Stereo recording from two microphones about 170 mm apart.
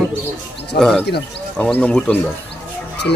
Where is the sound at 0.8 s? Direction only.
Centre (ahead or behind).